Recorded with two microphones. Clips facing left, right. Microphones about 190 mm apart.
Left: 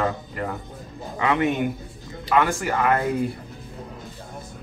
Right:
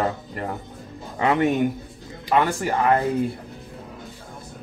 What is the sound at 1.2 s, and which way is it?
Speech, 40° right (ahead or behind).